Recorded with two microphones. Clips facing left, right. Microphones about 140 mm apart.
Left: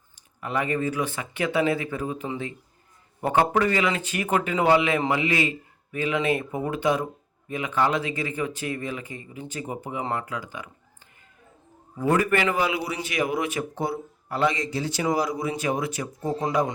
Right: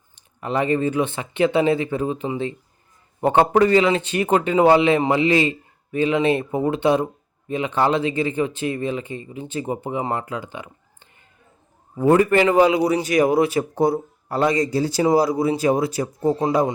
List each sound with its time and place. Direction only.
0.3 s speech: 30° right (ahead or behind)
11.9 s a man's voice: 30° right (ahead or behind)